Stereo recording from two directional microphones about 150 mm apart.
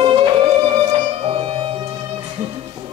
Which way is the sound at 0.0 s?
35° right (ahead or behind).